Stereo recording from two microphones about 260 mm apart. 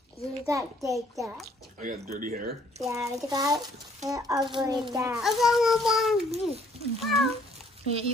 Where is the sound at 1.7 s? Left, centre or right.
Right.